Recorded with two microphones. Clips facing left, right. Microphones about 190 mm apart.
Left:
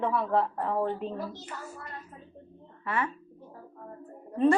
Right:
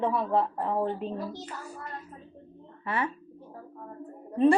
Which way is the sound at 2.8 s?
30° right (ahead or behind).